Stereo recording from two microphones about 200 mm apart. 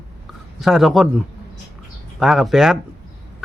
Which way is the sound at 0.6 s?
Centre (ahead or behind).